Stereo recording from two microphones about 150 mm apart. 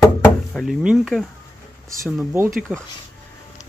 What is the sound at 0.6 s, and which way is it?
Speech, centre (ahead or behind).